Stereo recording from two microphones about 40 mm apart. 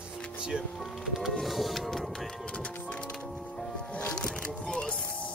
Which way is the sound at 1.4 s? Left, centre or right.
Centre.